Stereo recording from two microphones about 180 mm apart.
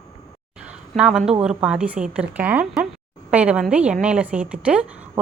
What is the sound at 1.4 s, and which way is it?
A woman's voice, 5° right (ahead or behind).